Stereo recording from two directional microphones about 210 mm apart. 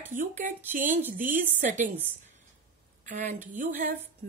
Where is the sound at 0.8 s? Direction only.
10° right (ahead or behind).